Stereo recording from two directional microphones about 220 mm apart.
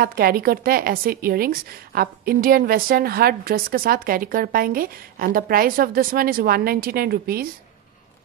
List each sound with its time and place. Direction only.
0.0 s a woman's voice: 45° right (ahead or behind)